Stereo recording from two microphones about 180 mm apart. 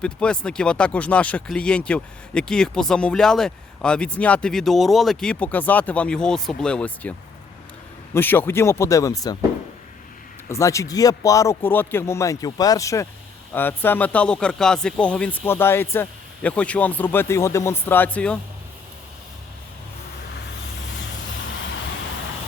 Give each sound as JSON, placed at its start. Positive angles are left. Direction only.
{"t": 0.0, "sound": "speech", "side_deg": 5}
{"t": 8.1, "sound": "speech", "side_deg": 10}
{"t": 10.5, "sound": "speech", "side_deg": 15}